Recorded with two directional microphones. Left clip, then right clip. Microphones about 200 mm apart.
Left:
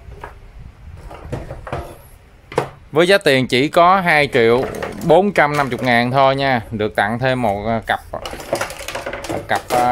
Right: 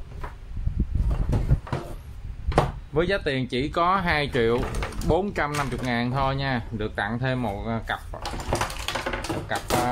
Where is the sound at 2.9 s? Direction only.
55° left (ahead or behind).